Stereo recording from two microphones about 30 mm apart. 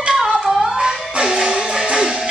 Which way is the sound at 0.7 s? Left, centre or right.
Right.